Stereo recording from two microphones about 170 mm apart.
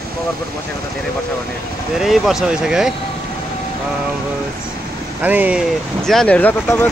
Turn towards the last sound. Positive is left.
turn(degrees=10)  # may be behind; listen again after turning